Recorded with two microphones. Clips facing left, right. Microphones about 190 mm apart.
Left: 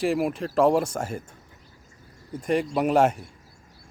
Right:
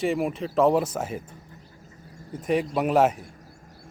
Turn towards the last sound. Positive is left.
turn(degrees=-5)  # may be behind; listen again after turning